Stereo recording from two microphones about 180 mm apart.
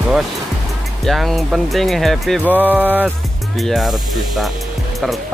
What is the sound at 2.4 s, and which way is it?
Speech, 10° right (ahead or behind).